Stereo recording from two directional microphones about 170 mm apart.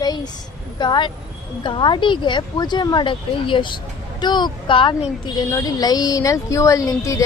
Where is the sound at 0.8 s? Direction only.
25° left (ahead or behind).